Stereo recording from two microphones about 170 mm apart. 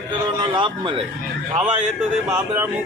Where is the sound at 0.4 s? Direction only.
30° right (ahead or behind).